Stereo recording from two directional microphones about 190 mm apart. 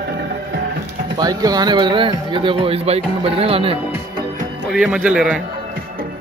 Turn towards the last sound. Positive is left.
turn(degrees=-5)  # may be behind; listen again after turning